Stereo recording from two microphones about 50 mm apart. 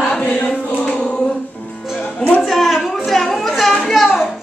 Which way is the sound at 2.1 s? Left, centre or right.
Left.